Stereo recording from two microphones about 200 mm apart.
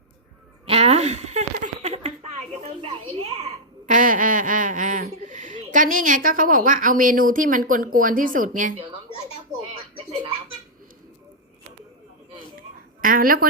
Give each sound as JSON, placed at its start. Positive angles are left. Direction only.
{"t": 0.6, "sound": "a sound", "side_deg": -30}
{"t": 2.6, "sound": "a child's voice", "side_deg": -30}
{"t": 13.0, "sound": "a woman's voice", "side_deg": -45}